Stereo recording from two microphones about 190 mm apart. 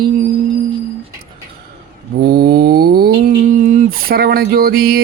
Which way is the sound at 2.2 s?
55° right (ahead or behind).